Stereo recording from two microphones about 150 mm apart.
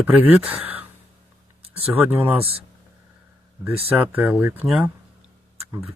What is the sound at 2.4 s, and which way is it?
Speech, 40° right (ahead or behind).